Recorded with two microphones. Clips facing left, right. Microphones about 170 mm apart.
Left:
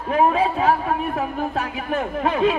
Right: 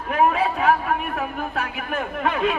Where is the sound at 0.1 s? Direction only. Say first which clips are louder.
Left 2 dB; 30° left (ahead or behind).